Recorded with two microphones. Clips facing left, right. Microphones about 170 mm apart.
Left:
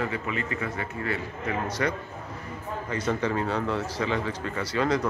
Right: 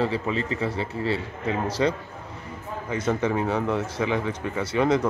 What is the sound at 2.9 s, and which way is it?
A man's voice, 15° right (ahead or behind).